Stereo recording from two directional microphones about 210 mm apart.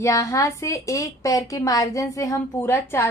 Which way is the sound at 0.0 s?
15° left (ahead or behind).